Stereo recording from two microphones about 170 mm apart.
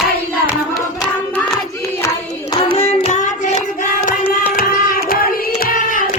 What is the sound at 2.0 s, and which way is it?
Hands, 20° left (ahead or behind).